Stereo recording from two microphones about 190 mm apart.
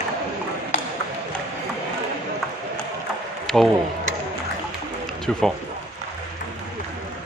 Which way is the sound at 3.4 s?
Centre (ahead or behind).